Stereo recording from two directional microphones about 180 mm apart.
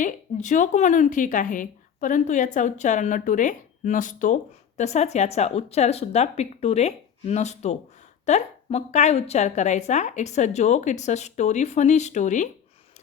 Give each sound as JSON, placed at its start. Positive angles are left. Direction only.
{"t": 0.0, "sound": "a woman's voice", "side_deg": 45}